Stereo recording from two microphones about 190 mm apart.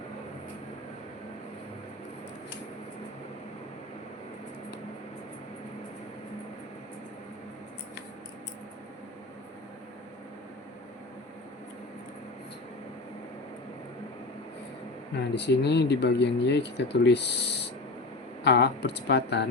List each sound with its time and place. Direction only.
15.4 s speech: 65° left (ahead or behind)